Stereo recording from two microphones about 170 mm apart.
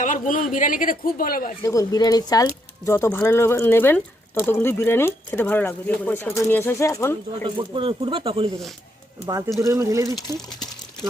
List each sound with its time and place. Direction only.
0.0 s speech: 50° left (ahead or behind)
1.6 s speech: 20° left (ahead or behind)
7.4 s speech: 30° right (ahead or behind)
9.6 s speech: 15° right (ahead or behind)